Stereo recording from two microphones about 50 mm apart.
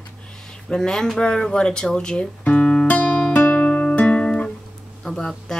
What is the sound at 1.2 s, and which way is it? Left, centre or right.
Guitar, centre.